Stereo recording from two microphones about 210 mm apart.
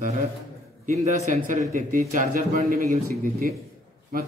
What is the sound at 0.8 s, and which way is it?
A man's voice, 35° right (ahead or behind).